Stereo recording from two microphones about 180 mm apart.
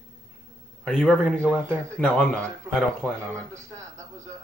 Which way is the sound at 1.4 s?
15° right (ahead or behind).